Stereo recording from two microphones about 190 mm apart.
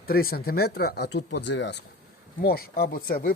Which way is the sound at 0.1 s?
50° left (ahead or behind).